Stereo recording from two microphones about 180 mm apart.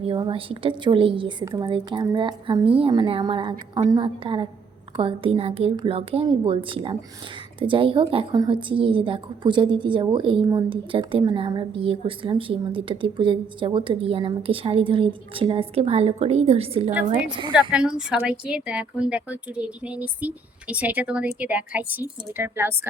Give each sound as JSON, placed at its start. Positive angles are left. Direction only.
{"t": 0.0, "sound": "speech", "side_deg": -30}
{"t": 17.5, "sound": "speech", "side_deg": -5}